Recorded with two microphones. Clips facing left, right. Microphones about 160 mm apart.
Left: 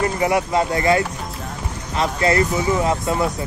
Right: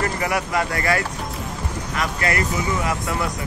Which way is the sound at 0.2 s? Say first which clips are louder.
Left 4 dB; 25° left (ahead or behind).